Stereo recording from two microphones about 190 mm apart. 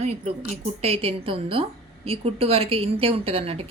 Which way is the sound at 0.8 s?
30° right (ahead or behind).